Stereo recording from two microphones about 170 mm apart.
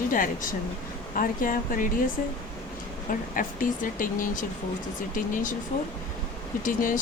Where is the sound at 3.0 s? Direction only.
55° left (ahead or behind).